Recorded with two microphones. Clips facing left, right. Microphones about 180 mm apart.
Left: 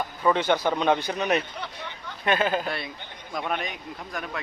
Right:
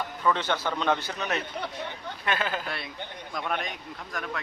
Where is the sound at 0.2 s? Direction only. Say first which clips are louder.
Left 5 dB; 15° left (ahead or behind).